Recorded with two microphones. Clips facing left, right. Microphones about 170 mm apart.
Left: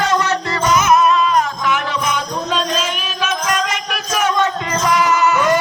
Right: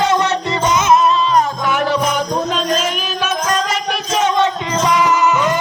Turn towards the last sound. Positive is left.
turn(degrees=-15)  # may be behind; listen again after turning